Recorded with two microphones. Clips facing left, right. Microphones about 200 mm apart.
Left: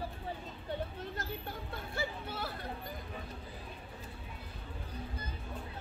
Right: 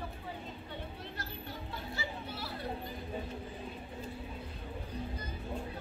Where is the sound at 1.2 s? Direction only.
50° left (ahead or behind).